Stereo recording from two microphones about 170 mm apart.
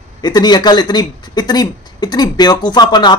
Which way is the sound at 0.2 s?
25° left (ahead or behind).